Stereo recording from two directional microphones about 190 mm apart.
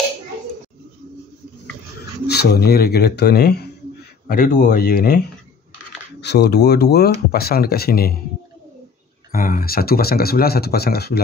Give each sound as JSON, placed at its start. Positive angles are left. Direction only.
{"t": 2.2, "sound": "speech", "side_deg": 60}
{"t": 9.3, "sound": "speech", "side_deg": 50}